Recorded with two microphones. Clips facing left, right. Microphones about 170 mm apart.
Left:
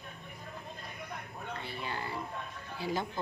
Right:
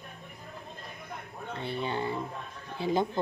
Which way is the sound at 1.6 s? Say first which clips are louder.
Right 10 dB; 25° right (ahead or behind).